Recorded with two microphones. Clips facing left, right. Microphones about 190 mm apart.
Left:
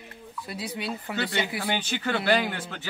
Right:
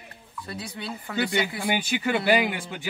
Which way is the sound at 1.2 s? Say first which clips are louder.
Right 4 dB; 10° right (ahead or behind).